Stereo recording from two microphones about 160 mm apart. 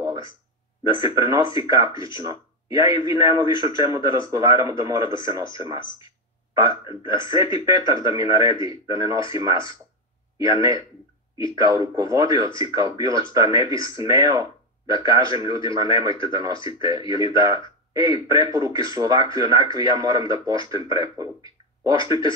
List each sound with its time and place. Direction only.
0.9 s speech: 25° right (ahead or behind)
6.7 s a man's voice: 30° left (ahead or behind)
7.2 s a man's voice: 20° right (ahead or behind)